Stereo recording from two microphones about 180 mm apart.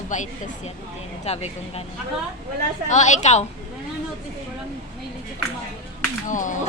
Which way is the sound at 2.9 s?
40° left (ahead or behind).